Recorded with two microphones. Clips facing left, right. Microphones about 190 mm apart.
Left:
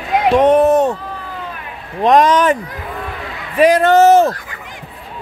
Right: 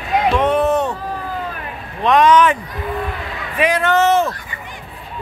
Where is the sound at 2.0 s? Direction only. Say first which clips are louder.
Left 1 dB; 40° left (ahead or behind).